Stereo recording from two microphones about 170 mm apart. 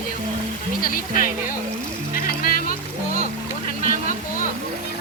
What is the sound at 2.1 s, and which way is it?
Music, 55° left (ahead or behind).